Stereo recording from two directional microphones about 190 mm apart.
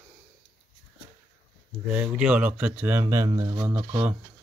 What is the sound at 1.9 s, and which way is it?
Speech, 5° right (ahead or behind).